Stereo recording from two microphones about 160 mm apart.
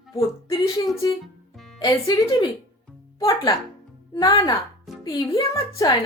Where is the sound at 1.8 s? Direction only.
25° left (ahead or behind).